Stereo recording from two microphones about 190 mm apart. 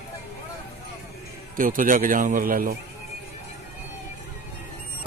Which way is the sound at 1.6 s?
45° right (ahead or behind).